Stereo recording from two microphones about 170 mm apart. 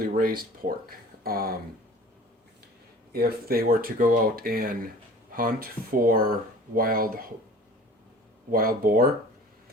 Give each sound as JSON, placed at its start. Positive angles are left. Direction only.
{"t": 0.0, "sound": "speech", "side_deg": -60}
{"t": 3.1, "sound": "speech", "side_deg": -65}
{"t": 8.4, "sound": "speech", "side_deg": -55}